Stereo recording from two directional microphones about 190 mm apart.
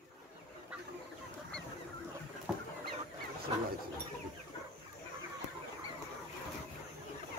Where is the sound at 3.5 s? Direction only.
25° right (ahead or behind).